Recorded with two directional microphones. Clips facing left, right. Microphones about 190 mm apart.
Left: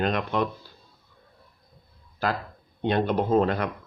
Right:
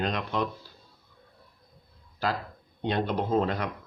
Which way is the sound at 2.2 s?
55° left (ahead or behind).